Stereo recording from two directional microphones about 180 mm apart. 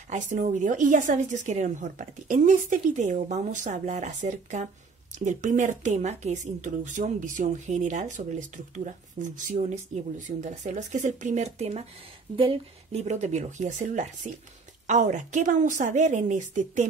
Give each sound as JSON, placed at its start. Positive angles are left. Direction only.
{"t": 0.1, "sound": "a woman's voice", "side_deg": -45}